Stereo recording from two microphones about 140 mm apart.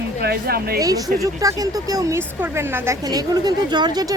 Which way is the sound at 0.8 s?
25° right (ahead or behind).